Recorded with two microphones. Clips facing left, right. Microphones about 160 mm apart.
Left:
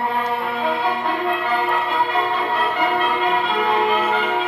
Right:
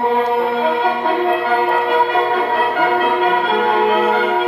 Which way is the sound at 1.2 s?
35° right (ahead or behind).